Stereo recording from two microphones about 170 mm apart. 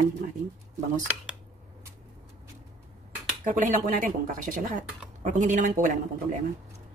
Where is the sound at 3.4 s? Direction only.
50° right (ahead or behind).